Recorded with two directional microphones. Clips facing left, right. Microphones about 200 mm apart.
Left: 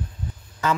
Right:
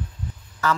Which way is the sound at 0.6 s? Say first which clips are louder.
Even; 20° left (ahead or behind).